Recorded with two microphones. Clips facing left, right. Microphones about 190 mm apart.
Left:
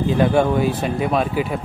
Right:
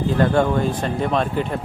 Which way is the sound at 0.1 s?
10° left (ahead or behind).